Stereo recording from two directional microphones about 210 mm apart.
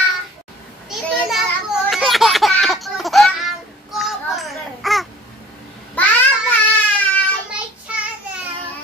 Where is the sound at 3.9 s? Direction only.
Centre (ahead or behind).